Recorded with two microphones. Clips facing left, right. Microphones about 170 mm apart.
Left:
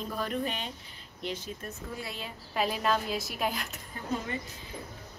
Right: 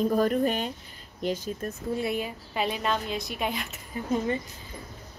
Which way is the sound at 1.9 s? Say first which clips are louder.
Right 13 dB; 20° right (ahead or behind).